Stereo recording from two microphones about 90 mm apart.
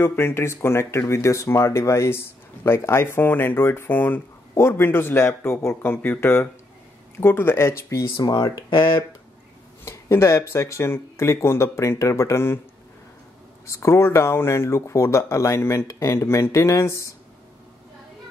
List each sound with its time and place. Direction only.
0.0 s speech: 25° left (ahead or behind)
8.2 s speech: 45° left (ahead or behind); by 8.9 s 65° left (ahead or behind)
9.8 s speech: 30° left (ahead or behind)
13.7 s speech: 30° left (ahead or behind)